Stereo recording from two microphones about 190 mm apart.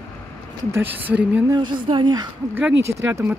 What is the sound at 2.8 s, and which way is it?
Speech, 15° right (ahead or behind).